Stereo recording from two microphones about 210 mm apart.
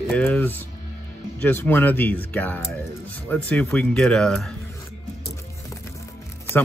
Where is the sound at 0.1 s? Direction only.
5° left (ahead or behind).